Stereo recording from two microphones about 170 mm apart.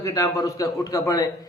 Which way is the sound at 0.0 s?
20° left (ahead or behind).